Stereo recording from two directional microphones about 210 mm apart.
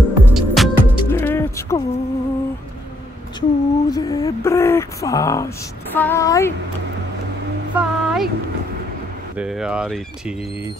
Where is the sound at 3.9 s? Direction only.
15° left (ahead or behind).